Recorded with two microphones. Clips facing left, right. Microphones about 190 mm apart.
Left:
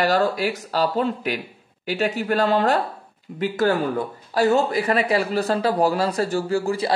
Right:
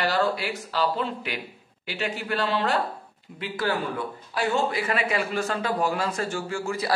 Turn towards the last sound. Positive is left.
turn(degrees=30)  # may be behind; listen again after turning